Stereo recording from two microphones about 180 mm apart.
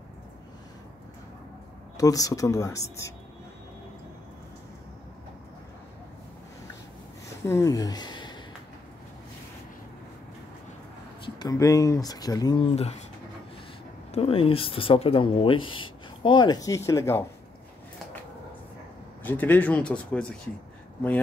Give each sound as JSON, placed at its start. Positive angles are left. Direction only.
{"t": 2.0, "sound": "speech", "side_deg": 20}
{"t": 7.4, "sound": "speech", "side_deg": 15}
{"t": 11.2, "sound": "speech", "side_deg": 25}
{"t": 14.1, "sound": "speech", "side_deg": 30}
{"t": 19.2, "sound": "speech", "side_deg": 10}